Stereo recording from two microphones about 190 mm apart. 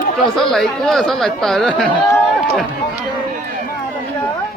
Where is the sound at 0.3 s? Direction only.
Centre (ahead or behind).